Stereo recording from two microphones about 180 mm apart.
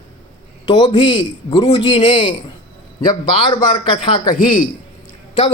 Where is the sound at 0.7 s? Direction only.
25° left (ahead or behind).